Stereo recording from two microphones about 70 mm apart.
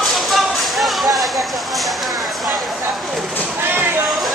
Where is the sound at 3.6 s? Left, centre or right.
Right.